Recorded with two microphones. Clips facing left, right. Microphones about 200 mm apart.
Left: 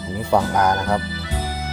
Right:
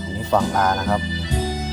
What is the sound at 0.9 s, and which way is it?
Music, 15° right (ahead or behind).